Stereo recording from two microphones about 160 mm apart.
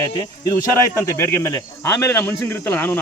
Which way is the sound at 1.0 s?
15° left (ahead or behind).